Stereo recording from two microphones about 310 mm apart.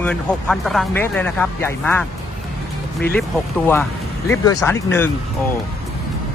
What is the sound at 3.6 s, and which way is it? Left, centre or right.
Speech, centre.